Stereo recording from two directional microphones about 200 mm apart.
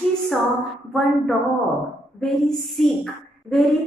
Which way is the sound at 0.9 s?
Centre (ahead or behind).